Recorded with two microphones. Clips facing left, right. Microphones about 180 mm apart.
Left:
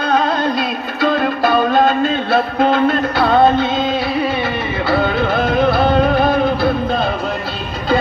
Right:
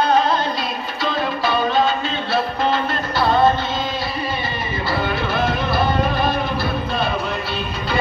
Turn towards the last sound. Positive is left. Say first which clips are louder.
# left 7 dB
turn(degrees=55)  # may be behind; listen again after turning